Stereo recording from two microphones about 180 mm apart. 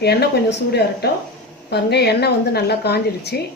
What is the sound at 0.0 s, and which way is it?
A woman's voice, 65° left (ahead or behind).